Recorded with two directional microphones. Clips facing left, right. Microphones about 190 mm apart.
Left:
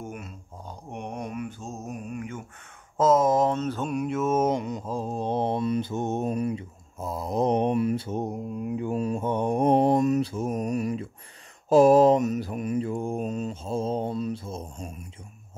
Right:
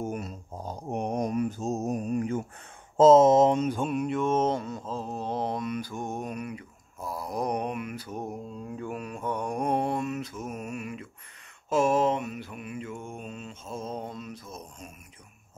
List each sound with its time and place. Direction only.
0.0 s mantra: 40° right (ahead or behind)
3.0 s speech: 25° right (ahead or behind)
3.9 s mantra: centre (ahead or behind); by 15.0 s 30° left (ahead or behind)